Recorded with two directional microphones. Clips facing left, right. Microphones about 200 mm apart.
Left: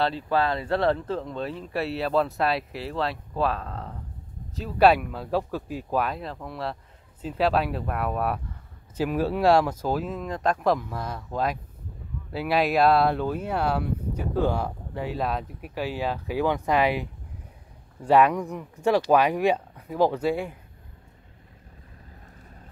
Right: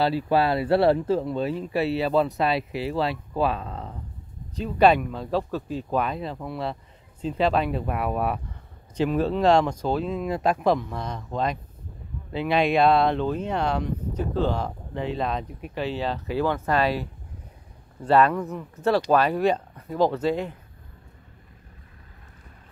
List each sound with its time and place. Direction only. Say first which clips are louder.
0.0 s speech: right 3 dB; 10° right (ahead or behind)
10.2 s speech: right 1 dB; 5° right (ahead or behind)
12.3 s speech: right 2 dB; 5° left (ahead or behind)